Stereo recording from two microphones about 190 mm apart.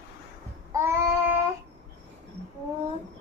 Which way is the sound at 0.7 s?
15° right (ahead or behind).